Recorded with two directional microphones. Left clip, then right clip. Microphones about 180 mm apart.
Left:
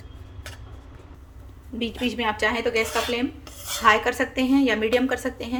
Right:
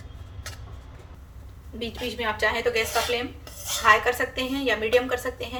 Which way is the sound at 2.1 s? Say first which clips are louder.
Even; 35° left (ahead or behind).